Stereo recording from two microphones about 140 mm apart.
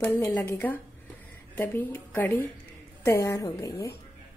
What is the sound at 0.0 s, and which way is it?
A woman's voice, 15° left (ahead or behind).